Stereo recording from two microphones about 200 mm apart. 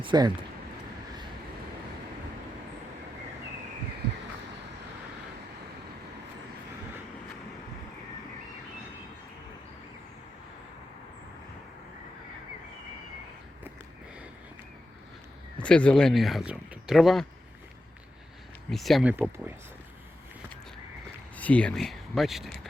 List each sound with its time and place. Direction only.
0.0 s speech: 25° right (ahead or behind)
15.6 s speech: 5° left (ahead or behind)
18.7 s speech: centre (ahead or behind)
21.3 s speech: 5° left (ahead or behind)